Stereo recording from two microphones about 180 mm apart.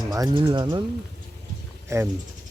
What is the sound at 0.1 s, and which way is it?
Speech, 20° right (ahead or behind).